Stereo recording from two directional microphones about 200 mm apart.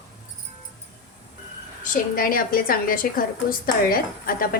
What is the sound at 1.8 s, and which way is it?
A woman's voice, 45° left (ahead or behind).